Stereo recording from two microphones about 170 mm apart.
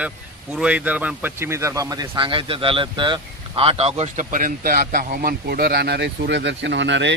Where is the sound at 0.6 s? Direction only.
5° right (ahead or behind).